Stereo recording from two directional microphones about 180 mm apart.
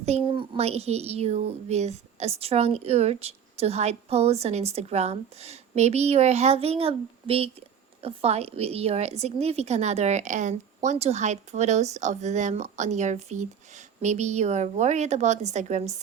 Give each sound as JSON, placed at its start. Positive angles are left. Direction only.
{"t": 0.0, "sound": "speech", "side_deg": -35}